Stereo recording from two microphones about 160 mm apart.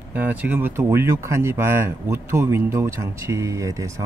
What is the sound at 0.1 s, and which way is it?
Speech, 10° right (ahead or behind).